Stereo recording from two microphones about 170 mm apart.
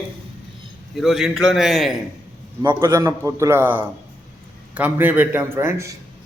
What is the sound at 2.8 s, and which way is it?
Speech, 20° right (ahead or behind).